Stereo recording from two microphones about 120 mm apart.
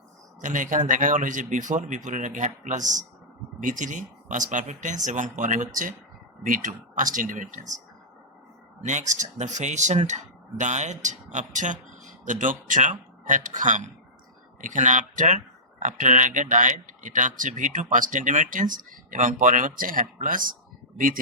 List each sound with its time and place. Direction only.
0.4 s speech: 90° right
8.9 s speech: 90° right